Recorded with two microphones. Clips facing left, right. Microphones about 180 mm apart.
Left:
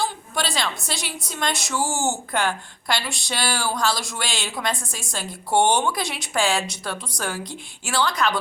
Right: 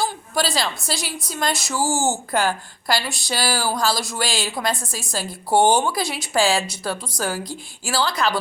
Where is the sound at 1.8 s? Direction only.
35° right (ahead or behind).